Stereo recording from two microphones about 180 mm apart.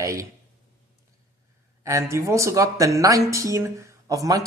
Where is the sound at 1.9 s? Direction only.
15° right (ahead or behind).